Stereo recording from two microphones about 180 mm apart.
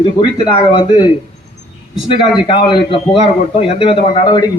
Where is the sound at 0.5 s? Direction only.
25° left (ahead or behind).